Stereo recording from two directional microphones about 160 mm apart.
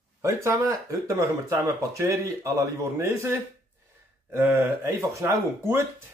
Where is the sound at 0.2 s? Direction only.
20° right (ahead or behind).